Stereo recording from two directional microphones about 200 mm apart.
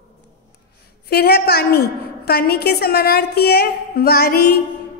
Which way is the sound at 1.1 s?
50° left (ahead or behind).